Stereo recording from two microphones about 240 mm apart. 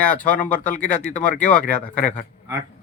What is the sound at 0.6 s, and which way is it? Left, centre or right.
Speech, left.